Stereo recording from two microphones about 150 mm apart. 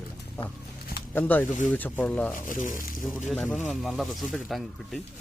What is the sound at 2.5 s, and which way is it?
Speech, 60° left (ahead or behind).